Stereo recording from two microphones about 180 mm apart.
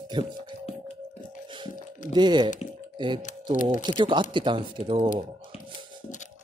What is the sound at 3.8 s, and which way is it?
Speech, 25° right (ahead or behind).